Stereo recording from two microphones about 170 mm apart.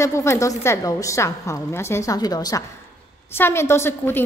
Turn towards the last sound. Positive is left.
turn(degrees=15)  # may be behind; listen again after turning